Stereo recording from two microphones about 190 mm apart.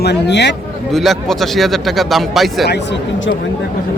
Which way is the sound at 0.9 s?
Centre (ahead or behind).